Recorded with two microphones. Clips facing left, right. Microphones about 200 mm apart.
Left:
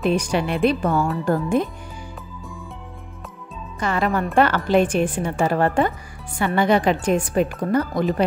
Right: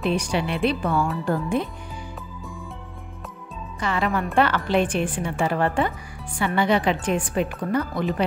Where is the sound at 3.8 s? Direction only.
45° left (ahead or behind).